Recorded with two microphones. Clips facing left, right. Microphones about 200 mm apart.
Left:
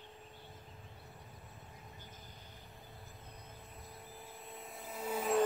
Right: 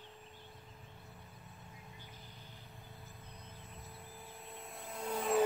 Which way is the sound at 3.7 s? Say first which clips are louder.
Left 1 dB; centre (ahead or behind).